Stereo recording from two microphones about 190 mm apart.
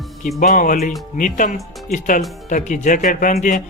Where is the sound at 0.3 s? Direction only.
45° left (ahead or behind).